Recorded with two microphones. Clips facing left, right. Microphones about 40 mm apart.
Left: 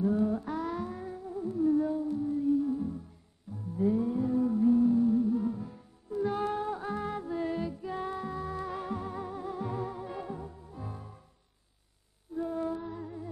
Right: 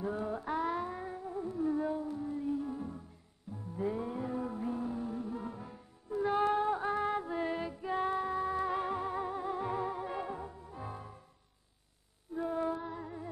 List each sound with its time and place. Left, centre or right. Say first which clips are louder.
0.0 s music: left 7 dB; centre
12.4 s music: left 1 dB; centre